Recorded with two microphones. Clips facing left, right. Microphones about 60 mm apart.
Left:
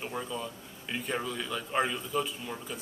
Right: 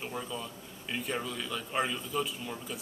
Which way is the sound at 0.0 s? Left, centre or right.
Centre.